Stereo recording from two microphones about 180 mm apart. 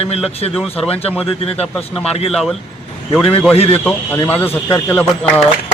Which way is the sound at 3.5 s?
35° left (ahead or behind).